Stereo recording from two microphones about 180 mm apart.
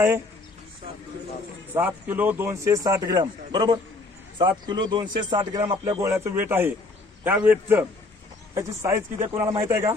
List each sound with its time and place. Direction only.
1.7 s speech: 10° right (ahead or behind)